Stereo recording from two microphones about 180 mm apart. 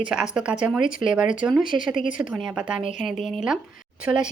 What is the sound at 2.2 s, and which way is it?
Speech, 5° right (ahead or behind).